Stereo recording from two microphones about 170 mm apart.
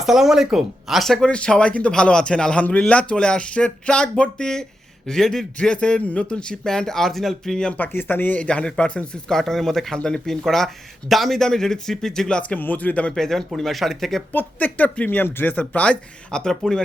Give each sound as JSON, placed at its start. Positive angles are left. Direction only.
{"t": 0.0, "sound": "speech", "side_deg": -5}